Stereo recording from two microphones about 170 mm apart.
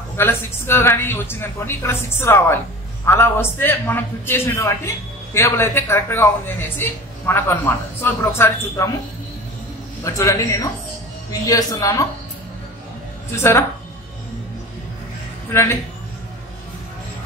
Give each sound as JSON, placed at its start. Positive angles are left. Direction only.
{"t": 0.2, "sound": "a man's voice", "side_deg": 15}
{"t": 10.0, "sound": "speech", "side_deg": 20}
{"t": 13.4, "sound": "a man's voice", "side_deg": 15}
{"t": 15.5, "sound": "a man's voice", "side_deg": 15}